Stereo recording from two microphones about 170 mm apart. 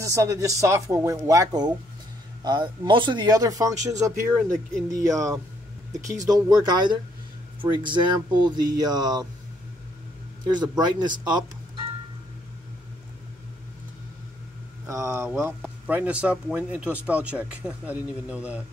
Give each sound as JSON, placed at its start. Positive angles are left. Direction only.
{"t": 0.0, "sound": "speech", "side_deg": -20}
{"t": 10.4, "sound": "speech", "side_deg": -25}
{"t": 14.9, "sound": "speech", "side_deg": -15}